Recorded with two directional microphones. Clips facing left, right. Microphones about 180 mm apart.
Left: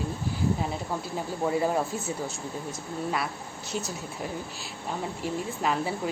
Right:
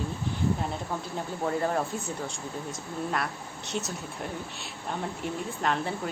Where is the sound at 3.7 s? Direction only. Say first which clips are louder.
Even; centre (ahead or behind).